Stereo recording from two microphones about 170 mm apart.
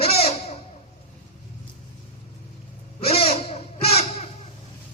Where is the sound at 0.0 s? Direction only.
35° left (ahead or behind).